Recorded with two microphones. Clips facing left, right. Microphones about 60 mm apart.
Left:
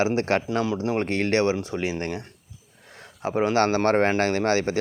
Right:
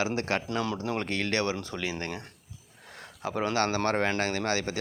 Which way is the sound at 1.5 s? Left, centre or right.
Centre.